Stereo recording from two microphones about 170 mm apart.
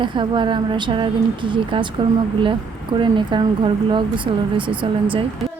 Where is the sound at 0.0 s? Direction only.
30° right (ahead or behind).